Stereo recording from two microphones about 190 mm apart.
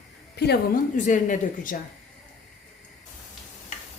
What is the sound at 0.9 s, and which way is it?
Speech, 40° left (ahead or behind).